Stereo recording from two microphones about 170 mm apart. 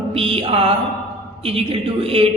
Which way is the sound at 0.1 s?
35° right (ahead or behind).